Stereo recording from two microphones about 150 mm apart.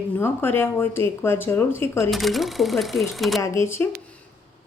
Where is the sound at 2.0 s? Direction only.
Centre (ahead or behind).